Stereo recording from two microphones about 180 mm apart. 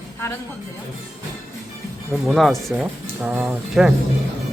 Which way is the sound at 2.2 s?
Centre (ahead or behind).